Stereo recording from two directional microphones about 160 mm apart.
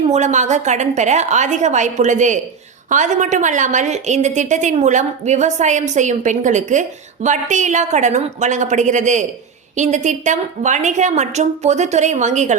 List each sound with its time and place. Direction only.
0.1 s a woman's voice: 45° right (ahead or behind)